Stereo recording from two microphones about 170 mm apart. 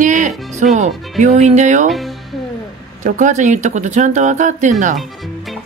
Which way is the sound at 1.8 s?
Centre (ahead or behind).